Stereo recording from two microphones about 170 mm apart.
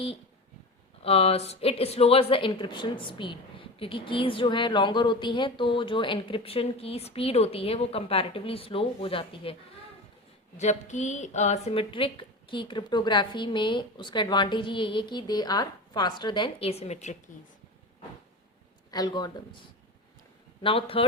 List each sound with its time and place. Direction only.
1.0 s a woman's voice: 35° left (ahead or behind)
10.6 s a woman's voice: 40° left (ahead or behind)
18.9 s a woman's voice: 25° left (ahead or behind)
20.6 s a woman's voice: 35° left (ahead or behind)